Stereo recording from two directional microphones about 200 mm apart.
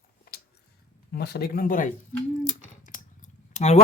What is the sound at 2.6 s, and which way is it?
Scissors, 40° left (ahead or behind).